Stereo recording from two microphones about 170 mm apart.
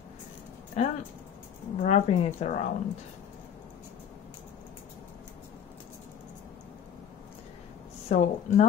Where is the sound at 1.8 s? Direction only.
40° left (ahead or behind).